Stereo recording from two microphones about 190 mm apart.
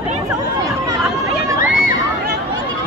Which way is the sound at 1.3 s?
50° left (ahead or behind).